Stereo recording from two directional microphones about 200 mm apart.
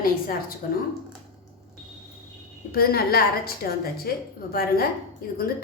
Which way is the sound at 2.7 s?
50° left (ahead or behind).